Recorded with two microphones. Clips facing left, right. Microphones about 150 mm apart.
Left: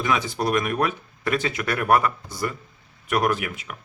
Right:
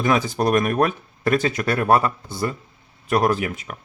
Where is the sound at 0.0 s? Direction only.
40° right (ahead or behind).